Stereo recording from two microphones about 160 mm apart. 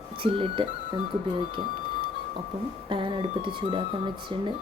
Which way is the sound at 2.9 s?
30° right (ahead or behind).